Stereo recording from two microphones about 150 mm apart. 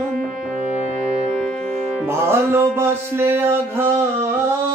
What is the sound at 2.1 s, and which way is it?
Mantra, 15° right (ahead or behind).